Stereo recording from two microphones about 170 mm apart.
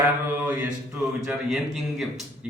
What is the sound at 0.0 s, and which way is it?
A man's voice, 10° right (ahead or behind).